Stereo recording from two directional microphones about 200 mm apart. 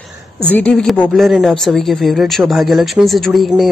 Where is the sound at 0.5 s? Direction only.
5° left (ahead or behind).